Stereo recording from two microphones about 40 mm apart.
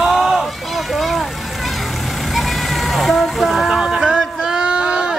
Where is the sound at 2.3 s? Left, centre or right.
Centre.